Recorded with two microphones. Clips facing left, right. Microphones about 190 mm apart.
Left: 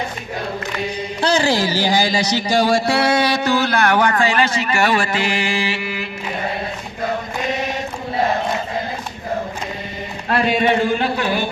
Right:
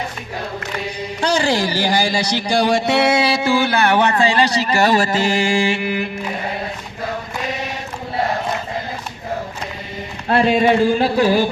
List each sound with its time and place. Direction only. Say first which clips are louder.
1.2 s a sound: even; 10° right (ahead or behind)
1.8 s speech: left 1 dB; 10° right (ahead or behind)
2.5 s music: even; 5° left (ahead or behind)
2.8 s a sound: right 1 dB; 25° right (ahead or behind)
3.3 s speech: right 1 dB; 10° right (ahead or behind)
3.8 s a man's voice: right 1 dB; 25° right (ahead or behind)
5.1 s mantra: right 4 dB; 45° right (ahead or behind)
10.2 s a man's voice: right 3 dB; 30° right (ahead or behind)